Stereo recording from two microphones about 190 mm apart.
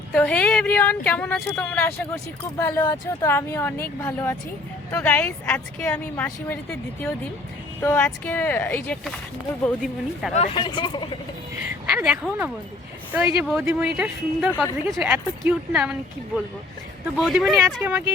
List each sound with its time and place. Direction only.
0.1 s speech: 5° left (ahead or behind)
10.3 s speech: 30° left (ahead or behind)
11.9 s a woman's voice: 10° right (ahead or behind)
17.2 s a woman's voice: centre (ahead or behind)
17.8 s speech: 10° right (ahead or behind)